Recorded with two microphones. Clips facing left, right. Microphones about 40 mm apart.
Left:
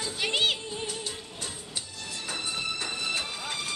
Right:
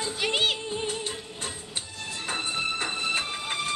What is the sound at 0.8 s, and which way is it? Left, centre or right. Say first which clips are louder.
Music: right 4 dB; right.